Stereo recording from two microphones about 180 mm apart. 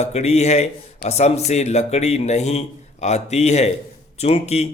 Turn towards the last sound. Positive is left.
turn(degrees=35)  # may be behind; listen again after turning